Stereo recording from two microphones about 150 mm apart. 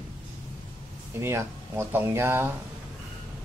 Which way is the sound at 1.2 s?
15° right (ahead or behind).